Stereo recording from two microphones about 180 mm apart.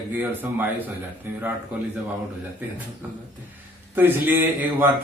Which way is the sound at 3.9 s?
10° right (ahead or behind).